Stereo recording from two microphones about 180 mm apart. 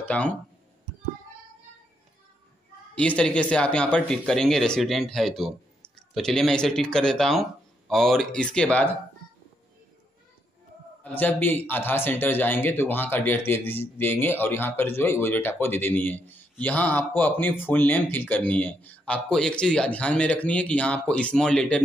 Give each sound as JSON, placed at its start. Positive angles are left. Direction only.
{"t": 0.1, "sound": "speech", "side_deg": 10}
{"t": 2.9, "sound": "speech", "side_deg": 5}
{"t": 11.1, "sound": "speech", "side_deg": 10}